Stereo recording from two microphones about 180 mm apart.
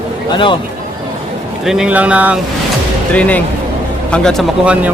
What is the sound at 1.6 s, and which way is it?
Speech, centre (ahead or behind).